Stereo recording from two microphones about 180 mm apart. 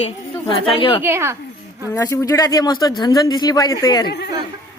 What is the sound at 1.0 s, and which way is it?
Speech, 15° right (ahead or behind).